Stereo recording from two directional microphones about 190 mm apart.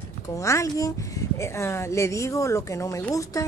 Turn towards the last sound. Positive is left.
turn(degrees=15)  # may be behind; listen again after turning